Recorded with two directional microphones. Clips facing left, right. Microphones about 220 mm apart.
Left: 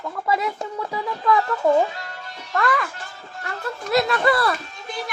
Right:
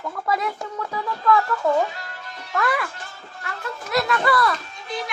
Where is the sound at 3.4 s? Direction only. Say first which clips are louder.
Left 3 dB; 30° left (ahead or behind).